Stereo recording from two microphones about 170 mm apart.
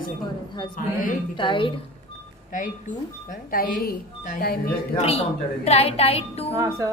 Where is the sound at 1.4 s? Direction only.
30° left (ahead or behind).